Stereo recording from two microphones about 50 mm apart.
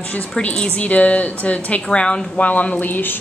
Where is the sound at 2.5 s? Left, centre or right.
Left.